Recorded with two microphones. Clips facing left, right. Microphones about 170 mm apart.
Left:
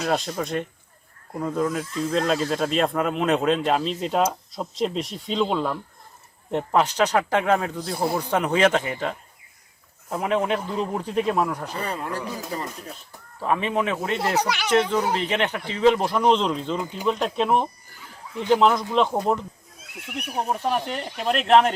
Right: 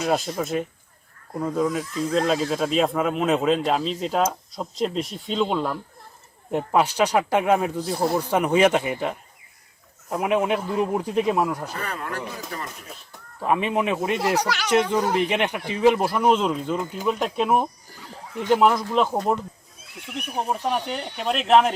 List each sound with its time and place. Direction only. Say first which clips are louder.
0.0 s speech: right 1 dB; centre (ahead or behind)
10.2 s speech: right 1 dB; 10° right (ahead or behind)
12.5 s speech: left 4 dB; 30° left (ahead or behind)
13.4 s speech: right 1 dB; 15° right (ahead or behind)
14.3 s speech: even; 5° left (ahead or behind)
14.7 s speech: right 1 dB; 15° right (ahead or behind)